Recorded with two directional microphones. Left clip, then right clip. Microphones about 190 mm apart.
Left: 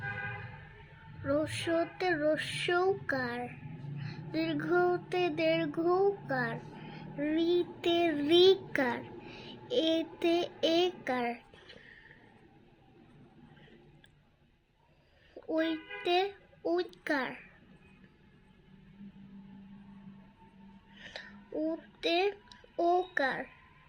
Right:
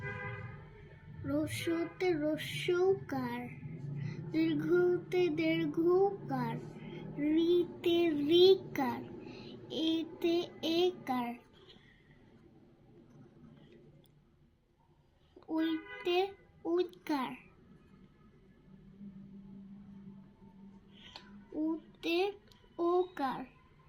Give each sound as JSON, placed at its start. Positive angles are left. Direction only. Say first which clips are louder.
{"t": 1.2, "sound": "a sound", "louder": "left 4 dB", "side_deg": 45}
{"t": 5.9, "sound": "a child's voice", "louder": "left 2 dB", "side_deg": 75}
{"t": 6.3, "sound": "a child's voice", "louder": "left 4 dB", "side_deg": 45}
{"t": 15.4, "sound": "a child's voice", "louder": "left 3 dB", "side_deg": 50}
{"t": 20.9, "sound": "music", "louder": "left 6 dB", "side_deg": 45}
{"t": 22.0, "sound": "a child's voice", "louder": "left 4 dB", "side_deg": 45}